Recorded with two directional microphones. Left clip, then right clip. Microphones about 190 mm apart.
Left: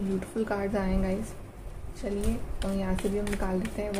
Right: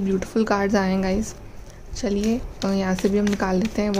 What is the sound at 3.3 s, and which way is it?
Speech, 55° right (ahead or behind).